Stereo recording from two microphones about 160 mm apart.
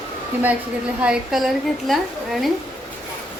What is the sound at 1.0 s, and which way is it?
A woman's voice, 5° right (ahead or behind).